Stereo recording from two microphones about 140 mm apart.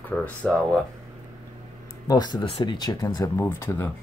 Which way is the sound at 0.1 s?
10° left (ahead or behind).